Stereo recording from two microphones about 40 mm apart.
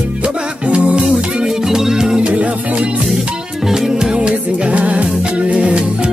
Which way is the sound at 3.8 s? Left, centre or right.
Centre.